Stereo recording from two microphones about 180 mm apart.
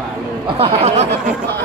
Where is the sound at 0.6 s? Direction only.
40° right (ahead or behind).